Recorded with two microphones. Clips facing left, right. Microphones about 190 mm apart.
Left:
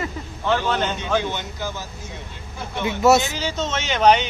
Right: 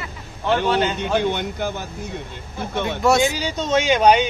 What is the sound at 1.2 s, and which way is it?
Speech, 55° right (ahead or behind).